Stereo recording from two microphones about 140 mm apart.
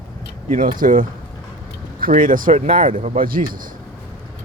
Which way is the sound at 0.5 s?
80° right.